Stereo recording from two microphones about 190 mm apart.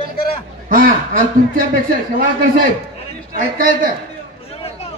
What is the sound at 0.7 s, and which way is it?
Chuckle, 50° right (ahead or behind).